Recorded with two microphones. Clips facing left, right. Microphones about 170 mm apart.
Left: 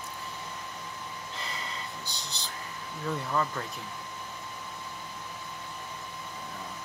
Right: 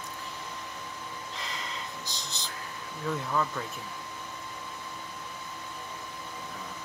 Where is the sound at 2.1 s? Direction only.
35° left (ahead or behind).